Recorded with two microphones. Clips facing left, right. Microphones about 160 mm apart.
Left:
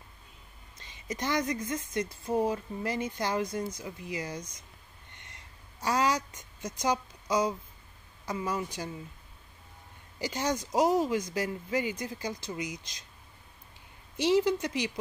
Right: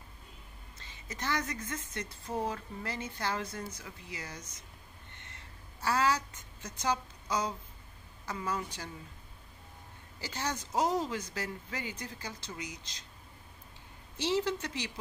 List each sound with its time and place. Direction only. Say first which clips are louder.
0.7 s a woman's voice: left 7 dB; 15° left (ahead or behind)
5.1 s a sound: left 1 dB; 15° left (ahead or behind)
8.3 s a woman's voice: left 4 dB; 10° left (ahead or behind)
10.2 s a woman's voice: left 6 dB; 15° left (ahead or behind)
14.1 s a woman's voice: left 6 dB; 15° left (ahead or behind)